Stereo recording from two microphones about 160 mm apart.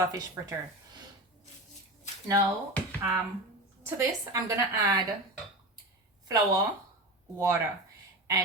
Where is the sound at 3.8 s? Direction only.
20° right (ahead or behind).